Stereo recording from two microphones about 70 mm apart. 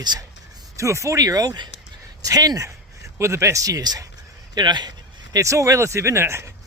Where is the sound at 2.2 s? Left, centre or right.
Right.